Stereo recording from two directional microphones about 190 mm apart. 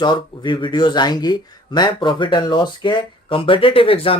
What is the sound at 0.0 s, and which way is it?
Speech, 25° left (ahead or behind).